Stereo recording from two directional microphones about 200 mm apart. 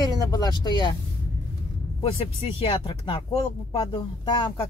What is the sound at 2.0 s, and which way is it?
A man's voice, 30° left (ahead or behind).